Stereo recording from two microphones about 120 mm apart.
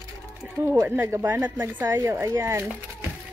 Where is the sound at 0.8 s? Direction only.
20° right (ahead or behind).